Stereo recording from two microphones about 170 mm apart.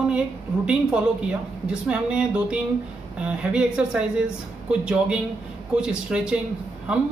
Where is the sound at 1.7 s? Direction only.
5° right (ahead or behind).